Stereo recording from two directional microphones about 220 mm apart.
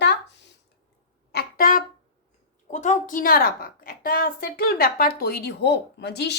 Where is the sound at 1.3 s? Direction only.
40° left (ahead or behind).